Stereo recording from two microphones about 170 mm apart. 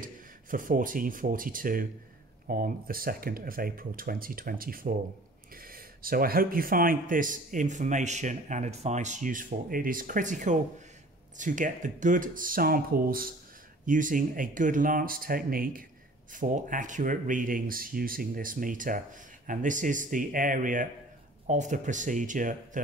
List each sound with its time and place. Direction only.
0.0 s speech: 55° right (ahead or behind)